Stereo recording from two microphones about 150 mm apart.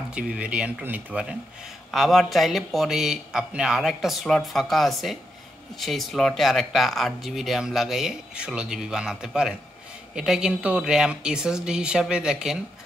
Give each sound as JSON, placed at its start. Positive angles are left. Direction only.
{"t": 0.1, "sound": "speech", "side_deg": -5}